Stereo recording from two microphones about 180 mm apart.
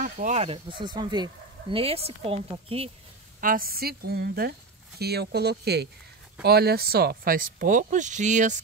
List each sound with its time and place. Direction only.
0.0 s speech: 40° right (ahead or behind)
3.3 s speech: 50° right (ahead or behind)